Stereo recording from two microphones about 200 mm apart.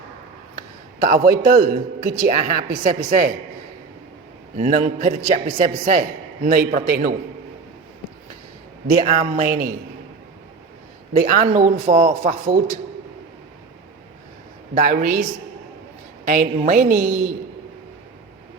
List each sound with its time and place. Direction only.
0.5 s a man's voice: 45° right (ahead or behind)
4.5 s a man's voice: 40° right (ahead or behind)
8.9 s a man's voice: 40° right (ahead or behind)
11.1 s a man's voice: 45° right (ahead or behind)
14.8 s a man's voice: 40° right (ahead or behind)